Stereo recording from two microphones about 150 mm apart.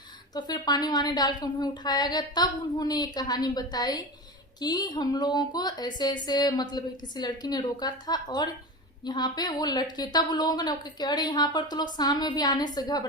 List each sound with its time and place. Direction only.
0.3 s a woman's voice: 30° left (ahead or behind)